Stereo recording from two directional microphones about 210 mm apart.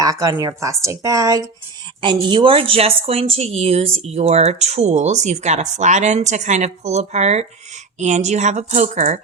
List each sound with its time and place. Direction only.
0.0 s speech: 15° right (ahead or behind); by 9.2 s 35° right (ahead or behind)